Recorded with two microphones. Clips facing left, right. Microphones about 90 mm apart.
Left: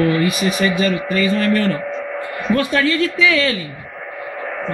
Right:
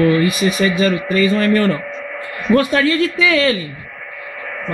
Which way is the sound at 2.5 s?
10° right (ahead or behind).